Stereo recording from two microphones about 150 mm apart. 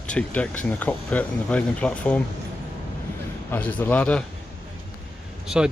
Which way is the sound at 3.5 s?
10° left (ahead or behind).